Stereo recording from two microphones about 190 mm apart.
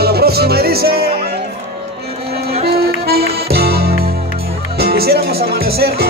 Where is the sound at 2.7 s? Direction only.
55° right (ahead or behind).